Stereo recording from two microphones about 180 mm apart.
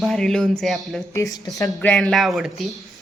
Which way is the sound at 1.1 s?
20° left (ahead or behind).